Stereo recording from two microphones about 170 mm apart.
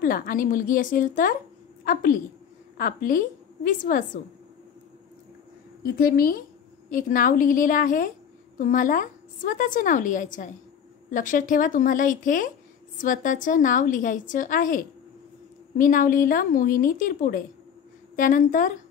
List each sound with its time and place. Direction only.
0.0 s a woman's voice: 55° left (ahead or behind)
5.8 s a woman's voice: 60° left (ahead or behind)